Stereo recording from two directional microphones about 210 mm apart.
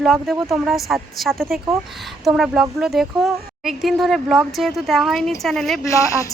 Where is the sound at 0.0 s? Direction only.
Centre (ahead or behind).